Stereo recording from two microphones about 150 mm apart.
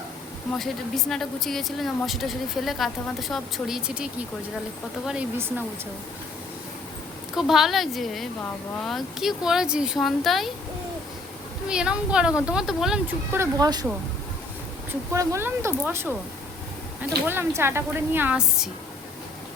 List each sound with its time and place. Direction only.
0.6 s speech: centre (ahead or behind)
7.3 s speech: centre (ahead or behind)
11.7 s speech: 5° right (ahead or behind)
13.3 s speech: 20° right (ahead or behind)
15.1 s speech: 20° right (ahead or behind); by 18.7 s 5° right (ahead or behind)